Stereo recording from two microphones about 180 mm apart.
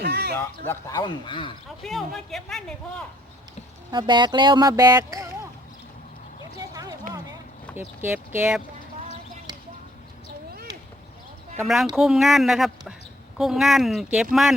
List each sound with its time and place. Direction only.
0.0 s a sound: 65° right (ahead or behind)
0.3 s speech: 15° left (ahead or behind)
1.8 s speech: centre (ahead or behind)
3.9 s speech: 25° right (ahead or behind)
6.6 s a sound: 20° right (ahead or behind)
7.8 s speech: 10° right (ahead or behind)
11.6 s speech: centre (ahead or behind)